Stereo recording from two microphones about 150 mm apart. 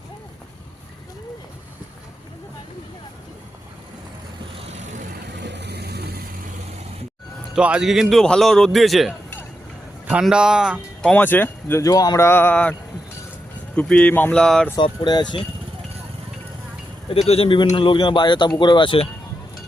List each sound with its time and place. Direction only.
4.6 s vehicle: 50° right (ahead or behind)
5.6 s mechanisms: 90° right
7.5 s a man's voice: 5° right (ahead or behind)
11.1 s speech: 10° left (ahead or behind)
13.7 s speech: 5° left (ahead or behind)
14.8 s speech: 30° left (ahead or behind)
17.1 s speech: 45° left (ahead or behind)